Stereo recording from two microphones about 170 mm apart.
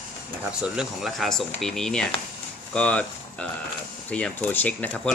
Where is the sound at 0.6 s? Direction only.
5° right (ahead or behind).